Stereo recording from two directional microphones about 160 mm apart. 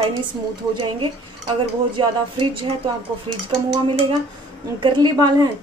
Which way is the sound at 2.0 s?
30° right (ahead or behind).